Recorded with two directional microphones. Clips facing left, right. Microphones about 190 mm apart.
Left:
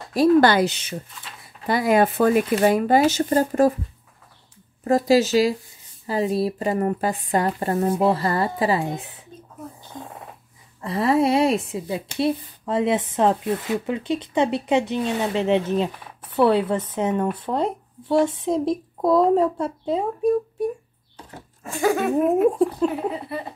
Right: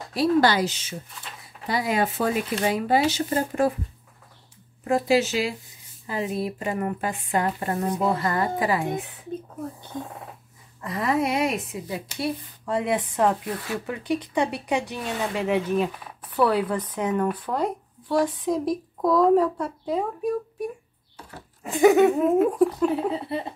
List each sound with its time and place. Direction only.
0.1 s a woman's voice: 50° left (ahead or behind)
4.8 s speech: 40° left (ahead or behind)
10.8 s a woman's voice: 30° left (ahead or behind)
21.6 s laughter: 20° right (ahead or behind)
22.1 s a woman's voice: 25° left (ahead or behind)
23.1 s laughter: 25° right (ahead or behind)